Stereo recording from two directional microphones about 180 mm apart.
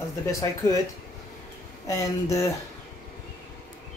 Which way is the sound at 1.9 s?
15° left (ahead or behind).